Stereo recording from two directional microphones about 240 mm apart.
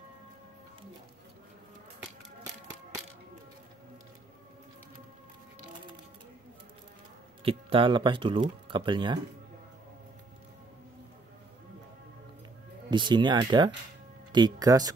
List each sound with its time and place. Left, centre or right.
7.4 s speech: right
12.9 s speech: centre